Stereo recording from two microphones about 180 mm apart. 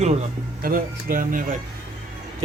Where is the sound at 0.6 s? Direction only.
50° right (ahead or behind).